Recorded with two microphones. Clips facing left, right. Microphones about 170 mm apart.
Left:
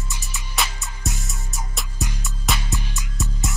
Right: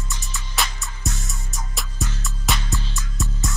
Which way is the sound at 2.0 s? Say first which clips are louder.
Even; 15° left (ahead or behind).